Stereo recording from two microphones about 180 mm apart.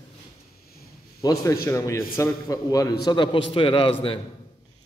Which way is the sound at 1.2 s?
20° left (ahead or behind).